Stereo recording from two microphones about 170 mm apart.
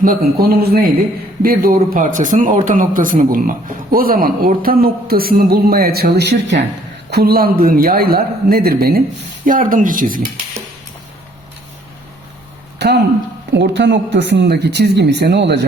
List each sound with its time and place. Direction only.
0.0 s speech: 60° right (ahead or behind); by 6.6 s 85° right
7.1 s speech: 65° right (ahead or behind)
9.5 s speech: 50° right (ahead or behind)
12.8 s a sound: 80° right
13.5 s speech: 90° right